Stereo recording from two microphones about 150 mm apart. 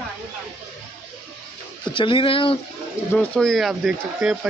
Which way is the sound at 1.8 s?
35° left (ahead or behind).